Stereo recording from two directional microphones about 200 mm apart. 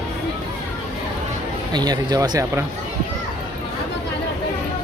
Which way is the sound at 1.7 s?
20° right (ahead or behind).